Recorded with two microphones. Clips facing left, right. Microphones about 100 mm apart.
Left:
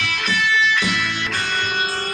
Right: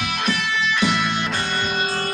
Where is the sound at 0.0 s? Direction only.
35° right (ahead or behind).